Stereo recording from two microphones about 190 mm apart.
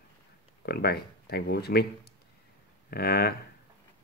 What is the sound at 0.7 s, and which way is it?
Speech, 55° left (ahead or behind).